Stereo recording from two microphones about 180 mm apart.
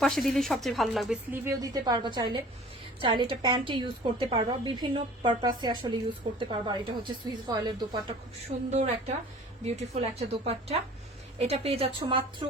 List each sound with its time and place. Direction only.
0.0 s a woman's voice: centre (ahead or behind)
1.3 s a woman's voice: 15° right (ahead or behind)
8.7 s a woman's voice: 40° right (ahead or behind)